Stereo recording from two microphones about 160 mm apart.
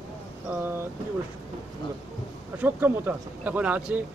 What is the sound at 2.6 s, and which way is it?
Speech, 10° right (ahead or behind).